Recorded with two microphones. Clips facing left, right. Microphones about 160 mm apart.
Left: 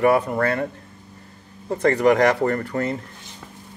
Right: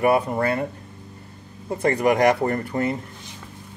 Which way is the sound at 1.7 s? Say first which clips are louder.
Left 3 dB; 15° right (ahead or behind).